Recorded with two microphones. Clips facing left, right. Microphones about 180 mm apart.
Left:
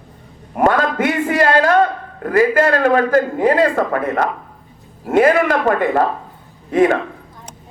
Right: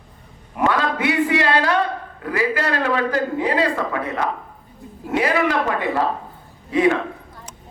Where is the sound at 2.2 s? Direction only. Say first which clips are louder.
Left 8 dB; 50° left (ahead or behind).